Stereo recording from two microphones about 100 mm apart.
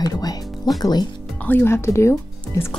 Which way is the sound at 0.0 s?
40° left (ahead or behind).